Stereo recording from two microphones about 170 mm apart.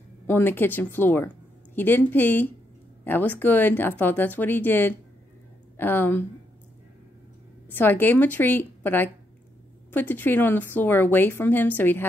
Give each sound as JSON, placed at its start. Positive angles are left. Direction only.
{"t": 0.3, "sound": "speech", "side_deg": 10}
{"t": 7.6, "sound": "speech", "side_deg": 10}